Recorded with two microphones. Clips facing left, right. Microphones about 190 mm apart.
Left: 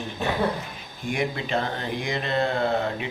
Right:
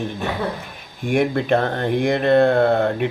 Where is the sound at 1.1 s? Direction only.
60° right (ahead or behind).